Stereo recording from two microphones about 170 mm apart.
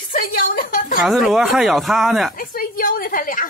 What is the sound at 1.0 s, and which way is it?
Speech, centre (ahead or behind).